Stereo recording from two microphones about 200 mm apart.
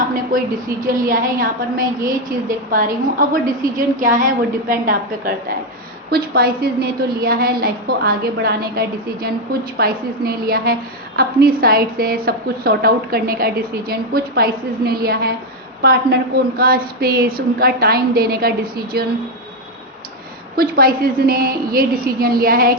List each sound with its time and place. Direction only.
0.1 s a woman's voice: 45° right (ahead or behind)
20.6 s a woman's voice: 50° right (ahead or behind)